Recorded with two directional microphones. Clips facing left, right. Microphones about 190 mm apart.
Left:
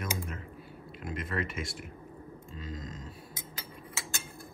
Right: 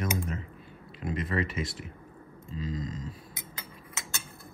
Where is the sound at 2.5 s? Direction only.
Centre (ahead or behind).